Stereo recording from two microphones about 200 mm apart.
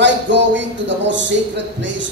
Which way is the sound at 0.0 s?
65° right (ahead or behind).